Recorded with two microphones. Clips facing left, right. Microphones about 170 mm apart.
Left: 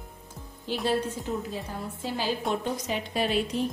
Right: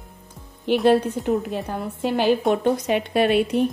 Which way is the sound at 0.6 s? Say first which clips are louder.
Right 10 dB; 65° right (ahead or behind).